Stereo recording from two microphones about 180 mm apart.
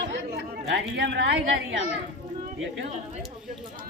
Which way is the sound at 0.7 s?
75° right (ahead or behind).